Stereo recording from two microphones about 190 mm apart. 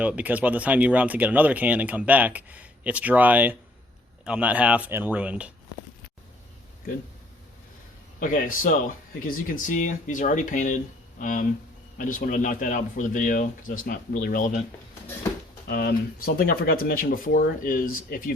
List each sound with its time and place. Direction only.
0.0 s speech: 5° right (ahead or behind)
8.2 s speech: 45° left (ahead or behind)
15.6 s speech: 55° left (ahead or behind)